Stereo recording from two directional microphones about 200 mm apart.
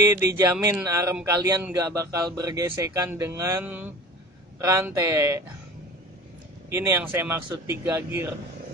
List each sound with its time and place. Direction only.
0.0 s a sound: 15° right (ahead or behind)
0.6 s a man's voice: 15° right (ahead or behind)
6.7 s a man's voice: 10° right (ahead or behind)